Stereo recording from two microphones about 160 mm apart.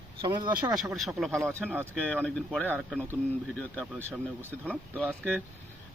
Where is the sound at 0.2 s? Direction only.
25° right (ahead or behind).